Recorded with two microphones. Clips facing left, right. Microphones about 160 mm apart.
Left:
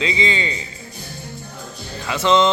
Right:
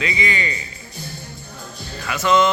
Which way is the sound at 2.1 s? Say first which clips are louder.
Left 1 dB; 25° left (ahead or behind).